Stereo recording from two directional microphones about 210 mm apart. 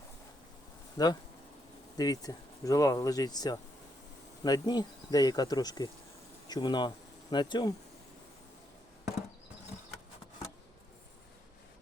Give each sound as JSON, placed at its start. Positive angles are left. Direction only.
{"t": 1.0, "sound": "insect", "side_deg": 20}
{"t": 2.0, "sound": "speech", "side_deg": 15}
{"t": 4.4, "sound": "insect", "side_deg": 20}
{"t": 6.5, "sound": "speech", "side_deg": 20}